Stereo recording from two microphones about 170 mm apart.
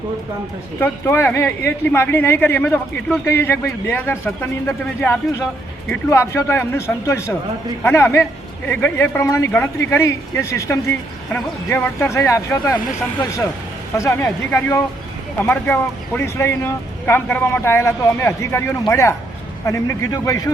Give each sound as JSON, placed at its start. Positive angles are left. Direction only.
{"t": 0.8, "sound": "speech", "side_deg": 15}
{"t": 13.9, "sound": "a man's voice", "side_deg": 15}